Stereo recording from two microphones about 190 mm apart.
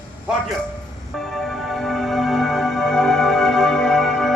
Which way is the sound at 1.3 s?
Centre (ahead or behind).